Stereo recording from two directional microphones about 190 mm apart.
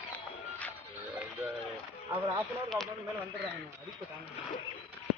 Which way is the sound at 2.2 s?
15° right (ahead or behind).